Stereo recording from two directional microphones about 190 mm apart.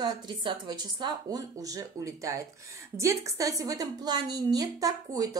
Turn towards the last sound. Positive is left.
turn(degrees=-20)  # may be behind; listen again after turning